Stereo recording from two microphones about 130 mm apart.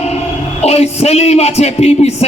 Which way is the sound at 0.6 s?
55° left (ahead or behind).